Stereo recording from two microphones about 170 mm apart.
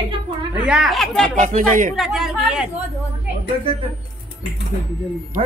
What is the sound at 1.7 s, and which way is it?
Speech, 50° right (ahead or behind).